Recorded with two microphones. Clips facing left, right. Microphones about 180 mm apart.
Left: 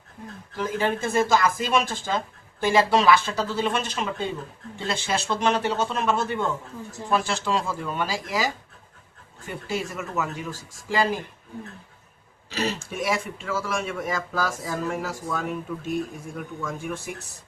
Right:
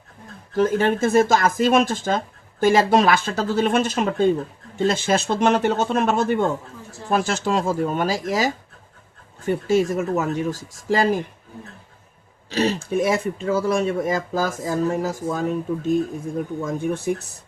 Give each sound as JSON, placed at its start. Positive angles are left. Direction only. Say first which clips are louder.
{"t": 0.5, "sound": "speech", "louder": "right 7 dB", "side_deg": -50}
{"t": 9.5, "sound": "speech", "louder": "right 11 dB", "side_deg": -45}
{"t": 12.5, "sound": "speech", "louder": "right 7 dB", "side_deg": -35}